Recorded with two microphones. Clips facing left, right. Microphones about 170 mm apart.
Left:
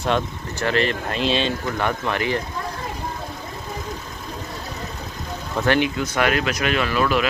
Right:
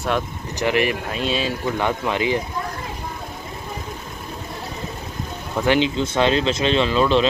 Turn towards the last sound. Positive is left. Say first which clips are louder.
# right 3 dB
turn(degrees=-25)  # may be behind; listen again after turning